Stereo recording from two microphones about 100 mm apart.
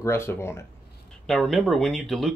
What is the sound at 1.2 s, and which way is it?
Speech, centre (ahead or behind).